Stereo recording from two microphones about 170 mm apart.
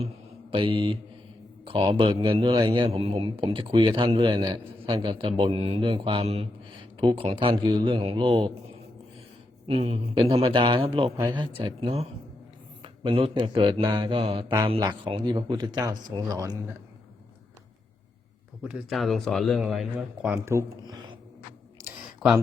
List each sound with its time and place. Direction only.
0.5 s speech: 30° right (ahead or behind)
18.6 s speech: 5° right (ahead or behind); by 21.2 s 25° right (ahead or behind)
22.2 s speech: centre (ahead or behind)